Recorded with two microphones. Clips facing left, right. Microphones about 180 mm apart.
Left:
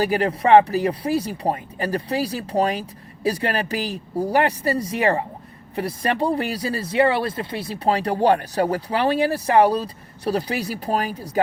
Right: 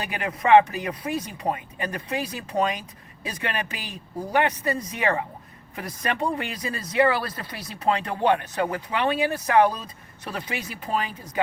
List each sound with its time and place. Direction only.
0.0 s speech: 35° left (ahead or behind)